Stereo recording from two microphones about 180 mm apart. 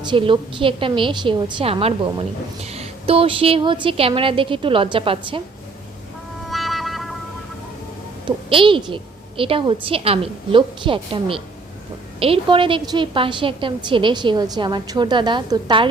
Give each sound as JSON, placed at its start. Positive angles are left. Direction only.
{"t": 0.0, "sound": "a woman's voice", "side_deg": -25}
{"t": 6.5, "sound": "music", "side_deg": 0}
{"t": 8.4, "sound": "a woman's voice", "side_deg": -30}